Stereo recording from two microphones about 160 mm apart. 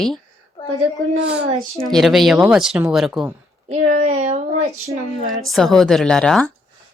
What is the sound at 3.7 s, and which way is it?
Speech, 45° right (ahead or behind).